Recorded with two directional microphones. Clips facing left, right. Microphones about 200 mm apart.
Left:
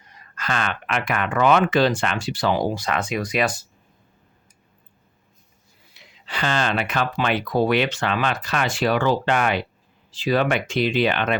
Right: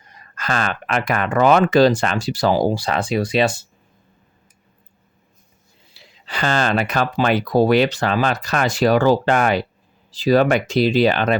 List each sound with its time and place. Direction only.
0.1 s speech: 40° right (ahead or behind); by 3.7 s 25° right (ahead or behind)
5.9 s speech: 35° right (ahead or behind)